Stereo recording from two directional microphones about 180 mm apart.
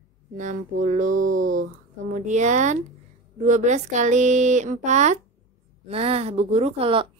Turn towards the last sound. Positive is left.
turn(degrees=-30)  # may be behind; listen again after turning